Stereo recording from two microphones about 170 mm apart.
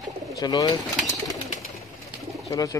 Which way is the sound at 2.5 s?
20° left (ahead or behind).